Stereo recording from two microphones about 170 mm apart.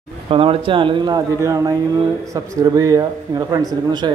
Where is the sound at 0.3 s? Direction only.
30° right (ahead or behind).